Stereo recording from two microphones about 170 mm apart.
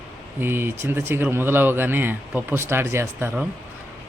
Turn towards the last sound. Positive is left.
turn(degrees=-10)  # may be behind; listen again after turning